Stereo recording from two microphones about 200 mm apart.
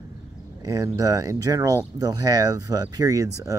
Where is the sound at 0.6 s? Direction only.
15° right (ahead or behind).